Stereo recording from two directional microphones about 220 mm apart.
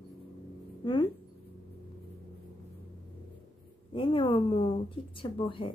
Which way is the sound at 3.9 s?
25° left (ahead or behind).